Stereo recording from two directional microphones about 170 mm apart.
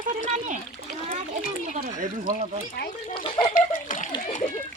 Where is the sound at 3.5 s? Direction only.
50° left (ahead or behind).